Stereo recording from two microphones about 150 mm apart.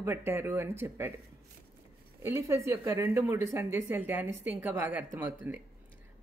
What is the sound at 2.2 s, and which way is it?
Speech, 20° right (ahead or behind).